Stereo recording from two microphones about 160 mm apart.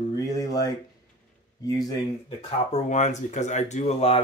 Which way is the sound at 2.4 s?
45° left (ahead or behind).